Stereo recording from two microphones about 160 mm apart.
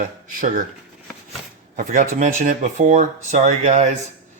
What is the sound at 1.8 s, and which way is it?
Speech, 55° right (ahead or behind).